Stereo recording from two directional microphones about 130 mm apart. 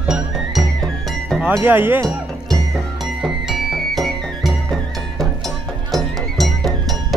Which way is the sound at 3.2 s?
Centre (ahead or behind).